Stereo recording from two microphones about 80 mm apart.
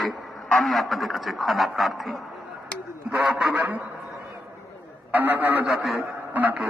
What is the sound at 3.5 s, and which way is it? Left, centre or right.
Speech, centre.